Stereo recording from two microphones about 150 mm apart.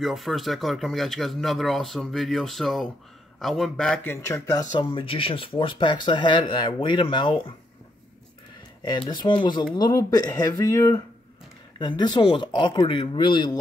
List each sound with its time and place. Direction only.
0.0 s speech: centre (ahead or behind)
4.1 s speech: 20° left (ahead or behind)
8.8 s speech: 30° left (ahead or behind)